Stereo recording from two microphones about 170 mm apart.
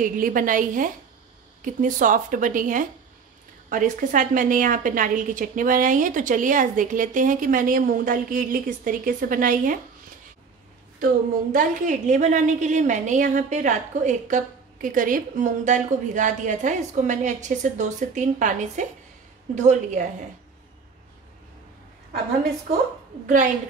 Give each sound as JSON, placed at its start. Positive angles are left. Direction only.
{"t": 0.0, "sound": "a woman's voice", "side_deg": -55}
{"t": 11.5, "sound": "a woman's voice", "side_deg": -50}
{"t": 23.2, "sound": "a woman's voice", "side_deg": -45}